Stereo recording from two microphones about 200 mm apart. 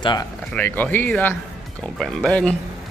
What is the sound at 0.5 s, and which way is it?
Speech, 10° left (ahead or behind).